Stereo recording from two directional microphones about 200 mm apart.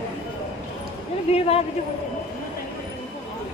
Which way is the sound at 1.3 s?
30° left (ahead or behind).